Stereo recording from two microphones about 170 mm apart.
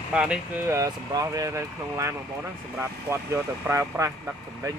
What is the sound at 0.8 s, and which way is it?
Speech, 20° right (ahead or behind).